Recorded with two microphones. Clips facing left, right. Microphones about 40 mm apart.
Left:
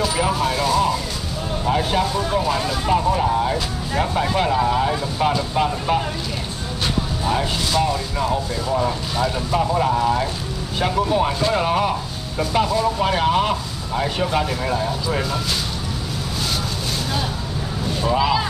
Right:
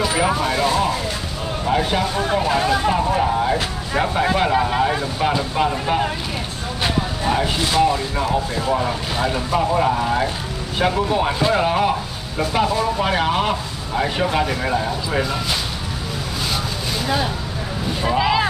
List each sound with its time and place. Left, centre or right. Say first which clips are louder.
0.1 s speech: right 1 dB; centre
1.7 s speech: even; centre
2.1 s speech: right 2 dB; right
3.1 s vehicle: even; centre
3.9 s speech: right 2 dB; centre
6.8 s vehicle: right 2 dB; right
9.1 s speech: right 3 dB; right
18.1 s speech: even; centre